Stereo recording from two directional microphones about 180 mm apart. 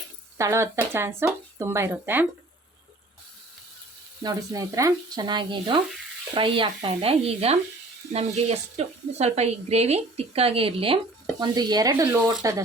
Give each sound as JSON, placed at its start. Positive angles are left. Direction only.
{"t": 0.3, "sound": "speech", "side_deg": -15}
{"t": 4.2, "sound": "speech", "side_deg": -20}